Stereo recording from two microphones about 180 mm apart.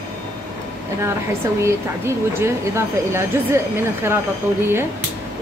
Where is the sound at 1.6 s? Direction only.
15° right (ahead or behind).